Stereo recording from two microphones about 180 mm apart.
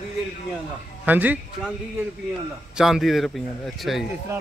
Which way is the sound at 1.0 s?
10° right (ahead or behind).